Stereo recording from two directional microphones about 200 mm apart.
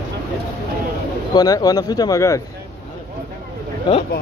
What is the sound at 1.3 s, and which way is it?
Speech, 20° left (ahead or behind).